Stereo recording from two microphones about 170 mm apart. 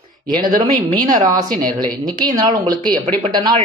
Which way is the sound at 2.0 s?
25° right (ahead or behind).